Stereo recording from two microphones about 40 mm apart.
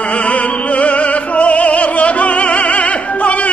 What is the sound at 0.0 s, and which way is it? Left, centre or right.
Opera, left.